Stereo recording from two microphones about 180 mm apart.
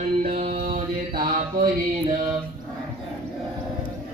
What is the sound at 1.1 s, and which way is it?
Mantra, 55° right (ahead or behind).